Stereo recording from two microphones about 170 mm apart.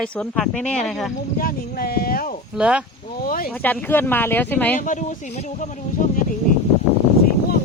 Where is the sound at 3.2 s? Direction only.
55° left (ahead or behind).